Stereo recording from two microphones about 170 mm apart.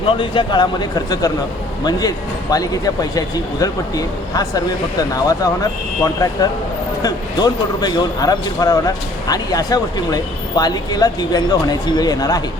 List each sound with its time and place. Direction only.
0.2 s speech: 30° left (ahead or behind)